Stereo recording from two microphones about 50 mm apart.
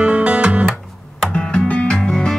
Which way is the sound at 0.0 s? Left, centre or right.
Right.